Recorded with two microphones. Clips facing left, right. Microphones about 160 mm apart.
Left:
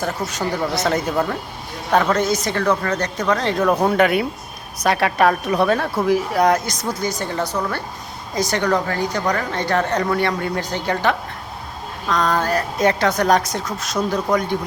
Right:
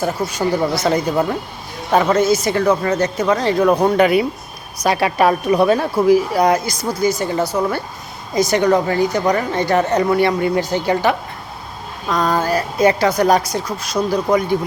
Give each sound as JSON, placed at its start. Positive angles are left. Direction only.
{"t": 0.0, "sound": "speech", "side_deg": -5}
{"t": 1.1, "sound": "a woman's voice", "side_deg": -15}
{"t": 3.8, "sound": "a woman's voice", "side_deg": 0}